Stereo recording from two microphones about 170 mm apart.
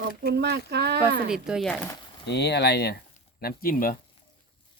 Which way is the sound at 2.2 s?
85° left.